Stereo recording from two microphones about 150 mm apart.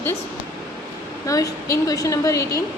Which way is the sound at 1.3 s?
25° left (ahead or behind).